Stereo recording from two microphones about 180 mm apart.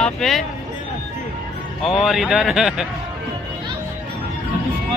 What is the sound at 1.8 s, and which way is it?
Speech, centre (ahead or behind).